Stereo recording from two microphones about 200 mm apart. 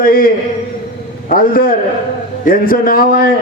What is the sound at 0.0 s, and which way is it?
Speech, 45° left (ahead or behind).